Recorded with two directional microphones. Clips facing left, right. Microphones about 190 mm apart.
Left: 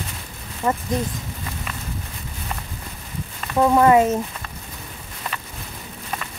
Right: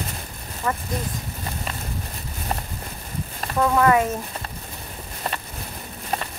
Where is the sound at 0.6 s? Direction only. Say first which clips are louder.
Left 4 dB; 25° left (ahead or behind).